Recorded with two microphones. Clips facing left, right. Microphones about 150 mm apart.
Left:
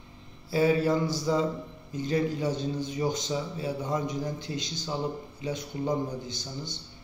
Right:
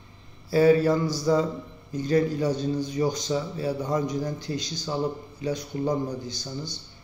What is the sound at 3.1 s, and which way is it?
A man's voice, 20° left (ahead or behind).